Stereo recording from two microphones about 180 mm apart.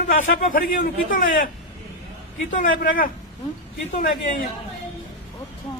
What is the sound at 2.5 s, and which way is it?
Speech, 50° left (ahead or behind).